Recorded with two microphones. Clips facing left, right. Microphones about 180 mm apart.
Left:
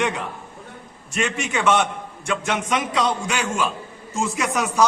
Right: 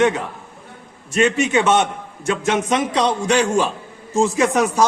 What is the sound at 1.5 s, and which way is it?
Speech, 20° right (ahead or behind).